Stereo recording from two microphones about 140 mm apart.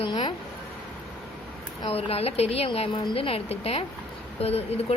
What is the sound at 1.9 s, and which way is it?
A woman's voice, 45° left (ahead or behind).